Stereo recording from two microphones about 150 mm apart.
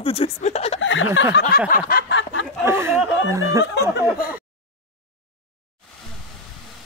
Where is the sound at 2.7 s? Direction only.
15° right (ahead or behind).